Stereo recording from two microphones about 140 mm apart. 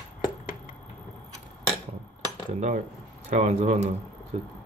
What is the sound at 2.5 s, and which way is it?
Speech, 60° right (ahead or behind).